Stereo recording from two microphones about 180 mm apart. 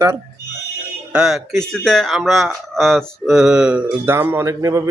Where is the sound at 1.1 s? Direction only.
5° right (ahead or behind).